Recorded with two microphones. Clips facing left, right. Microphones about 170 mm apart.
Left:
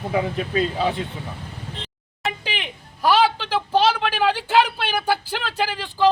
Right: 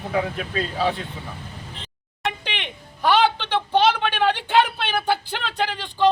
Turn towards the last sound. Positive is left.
turn(degrees=5)  # may be behind; listen again after turning